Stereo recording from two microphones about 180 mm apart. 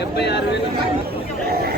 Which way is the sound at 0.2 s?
70° left (ahead or behind).